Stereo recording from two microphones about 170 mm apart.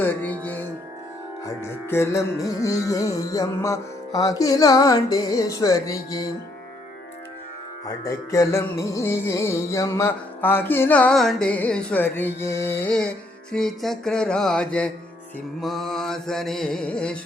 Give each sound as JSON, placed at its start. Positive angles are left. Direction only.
{"t": 0.0, "sound": "music", "side_deg": 10}
{"t": 7.9, "sound": "music", "side_deg": 20}
{"t": 13.5, "sound": "mantra", "side_deg": 0}